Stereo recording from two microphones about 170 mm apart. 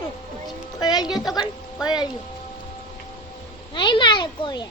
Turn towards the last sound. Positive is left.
turn(degrees=25)  # may be behind; listen again after turning